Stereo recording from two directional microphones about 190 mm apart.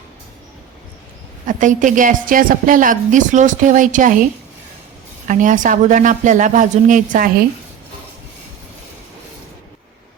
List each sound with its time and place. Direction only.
1.5 s a woman's voice: 40° right (ahead or behind)
5.3 s a woman's voice: 40° right (ahead or behind)